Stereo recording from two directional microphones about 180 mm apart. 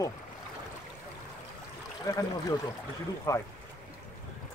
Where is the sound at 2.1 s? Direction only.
20° left (ahead or behind).